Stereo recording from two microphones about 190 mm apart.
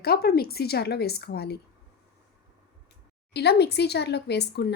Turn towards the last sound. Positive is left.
turn(degrees=60)  # may be behind; listen again after turning